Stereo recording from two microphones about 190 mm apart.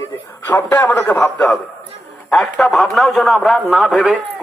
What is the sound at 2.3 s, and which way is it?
A man's voice, 5° left (ahead or behind).